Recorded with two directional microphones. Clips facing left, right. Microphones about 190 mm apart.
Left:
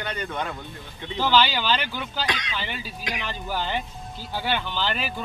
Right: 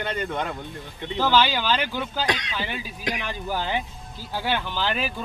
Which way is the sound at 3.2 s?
15° right (ahead or behind).